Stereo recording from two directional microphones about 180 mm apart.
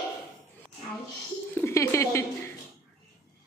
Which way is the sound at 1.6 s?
15° left (ahead or behind).